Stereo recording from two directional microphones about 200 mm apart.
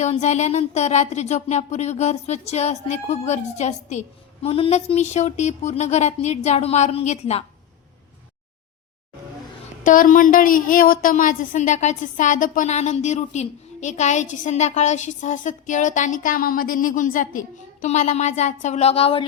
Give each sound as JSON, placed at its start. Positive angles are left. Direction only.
{"t": 0.0, "sound": "a woman's voice", "side_deg": 35}
{"t": 9.8, "sound": "a woman's voice", "side_deg": 40}